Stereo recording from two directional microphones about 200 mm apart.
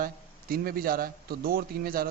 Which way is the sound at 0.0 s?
45° right (ahead or behind).